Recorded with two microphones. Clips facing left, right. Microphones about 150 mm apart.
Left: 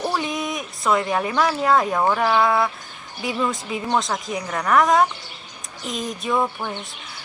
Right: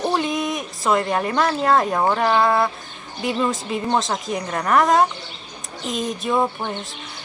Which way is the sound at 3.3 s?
20° right (ahead or behind).